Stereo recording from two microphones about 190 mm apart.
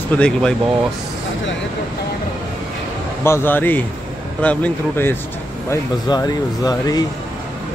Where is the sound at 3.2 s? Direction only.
10° left (ahead or behind).